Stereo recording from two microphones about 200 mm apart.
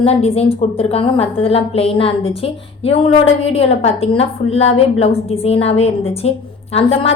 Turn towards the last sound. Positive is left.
turn(degrees=30)  # may be behind; listen again after turning